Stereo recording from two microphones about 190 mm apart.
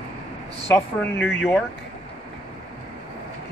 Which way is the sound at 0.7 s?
15° left (ahead or behind).